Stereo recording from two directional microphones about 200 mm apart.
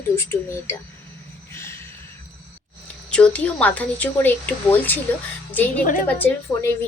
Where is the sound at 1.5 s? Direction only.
10° left (ahead or behind).